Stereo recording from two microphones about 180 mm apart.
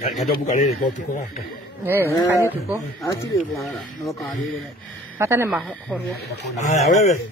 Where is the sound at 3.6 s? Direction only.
Centre (ahead or behind).